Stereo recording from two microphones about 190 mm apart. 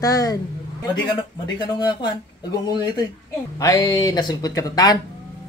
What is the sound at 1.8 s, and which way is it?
Speech, 20° left (ahead or behind).